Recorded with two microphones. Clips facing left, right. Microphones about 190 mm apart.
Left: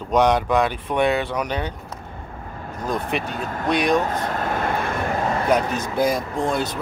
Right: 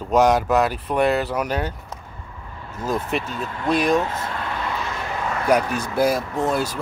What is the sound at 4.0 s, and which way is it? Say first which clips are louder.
Vehicle: left 3 dB; 45° left (ahead or behind).